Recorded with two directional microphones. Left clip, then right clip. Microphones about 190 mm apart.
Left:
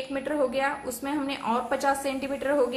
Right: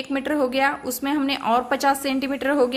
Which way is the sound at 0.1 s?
50° right (ahead or behind).